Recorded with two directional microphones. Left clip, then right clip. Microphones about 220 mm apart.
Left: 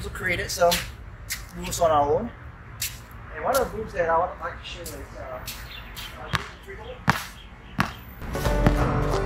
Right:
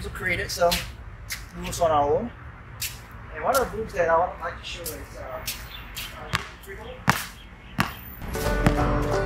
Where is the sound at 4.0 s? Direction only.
15° right (ahead or behind).